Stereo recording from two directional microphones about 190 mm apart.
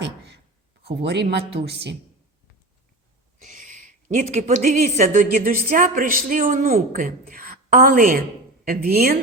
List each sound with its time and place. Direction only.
0.9 s a man's voice: 60° right (ahead or behind)
3.3 s a woman's voice: 40° right (ahead or behind)